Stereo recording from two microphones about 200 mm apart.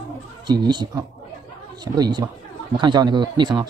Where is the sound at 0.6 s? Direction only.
20° right (ahead or behind).